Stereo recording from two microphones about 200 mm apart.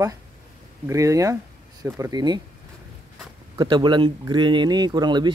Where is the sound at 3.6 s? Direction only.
20° right (ahead or behind).